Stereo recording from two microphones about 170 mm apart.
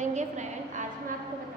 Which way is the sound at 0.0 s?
45° right (ahead or behind).